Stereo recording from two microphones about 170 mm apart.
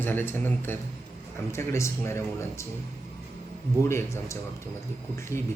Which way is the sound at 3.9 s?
15° left (ahead or behind).